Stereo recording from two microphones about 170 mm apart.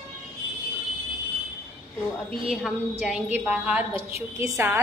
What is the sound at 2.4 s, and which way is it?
A woman's voice, centre (ahead or behind).